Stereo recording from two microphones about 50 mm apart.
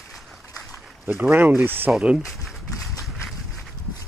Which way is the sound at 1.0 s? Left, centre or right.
Right.